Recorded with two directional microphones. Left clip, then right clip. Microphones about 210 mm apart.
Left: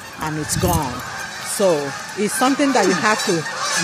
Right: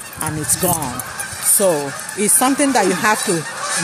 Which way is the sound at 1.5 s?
30° right (ahead or behind).